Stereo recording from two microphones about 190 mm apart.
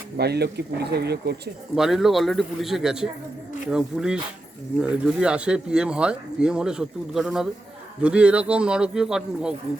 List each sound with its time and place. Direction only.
0.2 s speech: 60° right (ahead or behind)
1.7 s speech: centre (ahead or behind)